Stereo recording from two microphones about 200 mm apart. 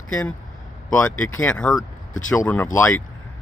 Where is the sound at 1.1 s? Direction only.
90° left.